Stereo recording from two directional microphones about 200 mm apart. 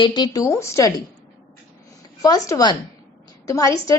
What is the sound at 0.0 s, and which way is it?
A woman's voice, 20° left (ahead or behind).